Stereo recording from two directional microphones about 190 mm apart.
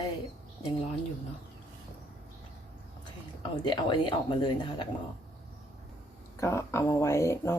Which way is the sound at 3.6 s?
25° left (ahead or behind).